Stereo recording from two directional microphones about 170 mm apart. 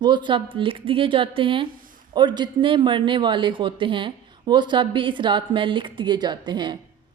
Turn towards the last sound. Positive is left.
turn(degrees=-25)  # may be behind; listen again after turning